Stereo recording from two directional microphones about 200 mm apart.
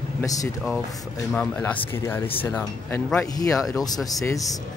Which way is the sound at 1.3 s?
5° left (ahead or behind).